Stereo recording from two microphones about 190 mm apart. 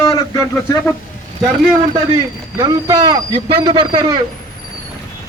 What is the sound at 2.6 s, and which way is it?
A man's voice, 20° right (ahead or behind).